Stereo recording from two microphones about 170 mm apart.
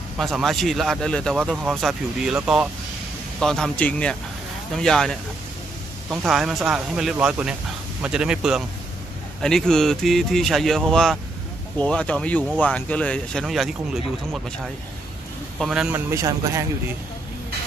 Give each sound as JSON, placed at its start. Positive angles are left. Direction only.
{"t": 0.2, "sound": "speech", "side_deg": 0}
{"t": 6.2, "sound": "speech", "side_deg": 0}
{"t": 15.6, "sound": "speech", "side_deg": -5}
{"t": 16.1, "sound": "speech", "side_deg": -20}